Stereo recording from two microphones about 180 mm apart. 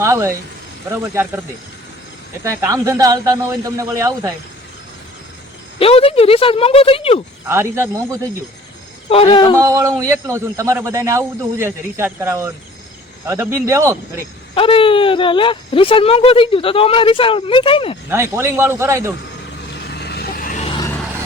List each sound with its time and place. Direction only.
0.0 s a man's voice: 15° right (ahead or behind)
2.4 s a man's voice: 15° right (ahead or behind)
5.8 s speech: 30° left (ahead or behind)
7.4 s a man's voice: 15° right (ahead or behind)
9.0 s speech: 30° left (ahead or behind)
9.6 s a man's voice: 20° right (ahead or behind)
14.5 s speech: 30° left (ahead or behind)
18.1 s a man's voice: 15° right (ahead or behind)
20.0 s vehicle: 60° left (ahead or behind)